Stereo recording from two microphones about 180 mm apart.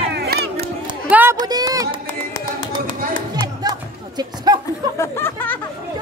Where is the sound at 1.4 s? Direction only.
20° right (ahead or behind).